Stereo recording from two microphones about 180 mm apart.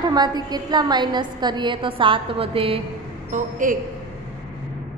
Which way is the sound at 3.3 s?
45° right (ahead or behind).